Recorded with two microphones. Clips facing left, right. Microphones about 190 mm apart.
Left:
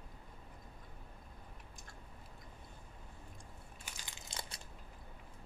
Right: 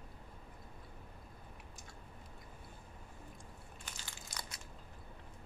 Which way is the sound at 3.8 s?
20° left (ahead or behind).